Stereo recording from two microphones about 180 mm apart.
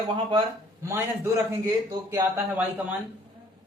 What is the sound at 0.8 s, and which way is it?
Speech, 15° right (ahead or behind).